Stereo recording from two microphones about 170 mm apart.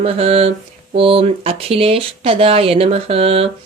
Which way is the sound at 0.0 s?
35° right (ahead or behind).